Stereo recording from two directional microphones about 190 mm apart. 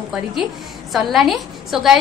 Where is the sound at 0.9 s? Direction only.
Centre (ahead or behind).